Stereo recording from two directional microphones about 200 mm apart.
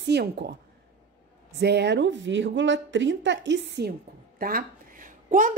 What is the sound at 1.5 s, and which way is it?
A woman's voice, 55° right (ahead or behind).